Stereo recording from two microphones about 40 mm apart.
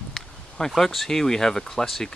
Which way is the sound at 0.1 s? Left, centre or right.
Centre.